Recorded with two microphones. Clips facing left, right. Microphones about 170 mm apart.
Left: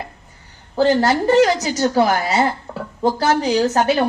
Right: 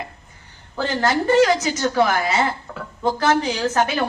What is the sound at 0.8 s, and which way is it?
A woman's voice, 35° left (ahead or behind).